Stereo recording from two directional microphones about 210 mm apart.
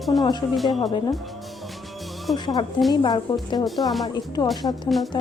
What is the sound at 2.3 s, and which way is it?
Speech, 20° left (ahead or behind).